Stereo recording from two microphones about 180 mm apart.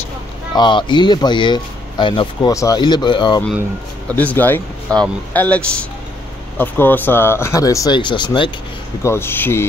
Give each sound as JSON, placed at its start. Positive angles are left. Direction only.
{"t": 0.6, "sound": "speech", "side_deg": 25}
{"t": 4.1, "sound": "speech", "side_deg": 10}
{"t": 9.0, "sound": "speech", "side_deg": 15}